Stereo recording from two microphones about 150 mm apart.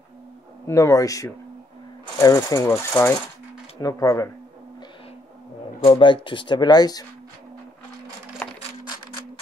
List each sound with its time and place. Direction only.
0.7 s speech: 20° left (ahead or behind)
5.9 s speech: 35° left (ahead or behind)
8.4 s a sound: 10° left (ahead or behind)